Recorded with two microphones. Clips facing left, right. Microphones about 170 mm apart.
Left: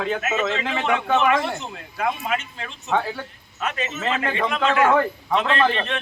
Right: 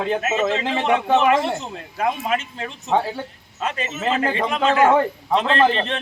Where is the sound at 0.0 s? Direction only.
30° right (ahead or behind).